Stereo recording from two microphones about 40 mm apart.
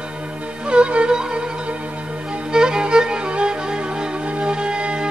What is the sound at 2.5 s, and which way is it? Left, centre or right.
Music, centre.